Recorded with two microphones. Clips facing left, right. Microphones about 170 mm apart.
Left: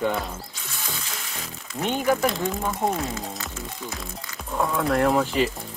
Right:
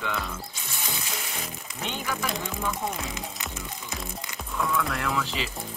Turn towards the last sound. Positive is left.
turn(degrees=50)  # may be behind; listen again after turning